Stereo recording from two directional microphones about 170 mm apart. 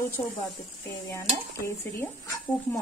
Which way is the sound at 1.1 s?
15° left (ahead or behind).